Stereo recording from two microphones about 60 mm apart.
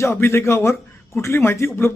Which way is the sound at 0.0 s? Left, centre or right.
Left.